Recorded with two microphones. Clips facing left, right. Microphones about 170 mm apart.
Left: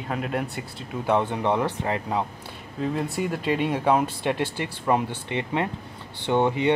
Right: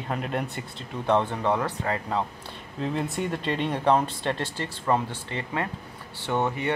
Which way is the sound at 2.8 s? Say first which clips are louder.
Left 2 dB; centre (ahead or behind).